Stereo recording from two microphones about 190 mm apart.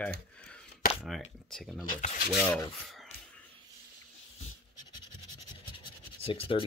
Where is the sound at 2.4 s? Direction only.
10° left (ahead or behind).